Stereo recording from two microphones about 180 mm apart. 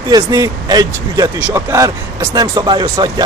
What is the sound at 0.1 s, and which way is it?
A man's voice, 20° right (ahead or behind).